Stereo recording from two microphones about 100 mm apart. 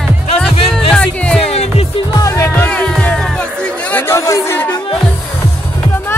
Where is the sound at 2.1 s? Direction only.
35° left (ahead or behind).